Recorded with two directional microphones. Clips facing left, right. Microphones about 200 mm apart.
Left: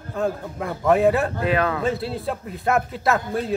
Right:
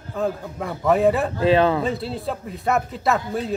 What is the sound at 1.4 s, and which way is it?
Speech, 25° right (ahead or behind).